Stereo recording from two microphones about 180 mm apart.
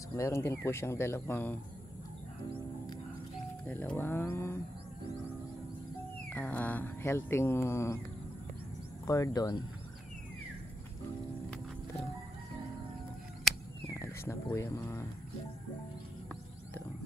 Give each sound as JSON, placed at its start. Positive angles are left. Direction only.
{"t": 0.1, "sound": "speech", "side_deg": 15}
{"t": 3.6, "sound": "speech", "side_deg": 10}
{"t": 6.3, "sound": "speech", "side_deg": 10}
{"t": 9.0, "sound": "speech", "side_deg": 20}
{"t": 13.4, "sound": "a sound", "side_deg": 0}
{"t": 13.9, "sound": "speech", "side_deg": 15}